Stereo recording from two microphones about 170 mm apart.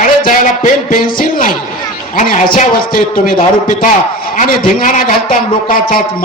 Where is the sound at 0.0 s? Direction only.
50° left (ahead or behind).